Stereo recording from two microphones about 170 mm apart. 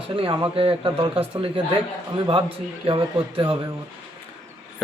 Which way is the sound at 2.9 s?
30° right (ahead or behind).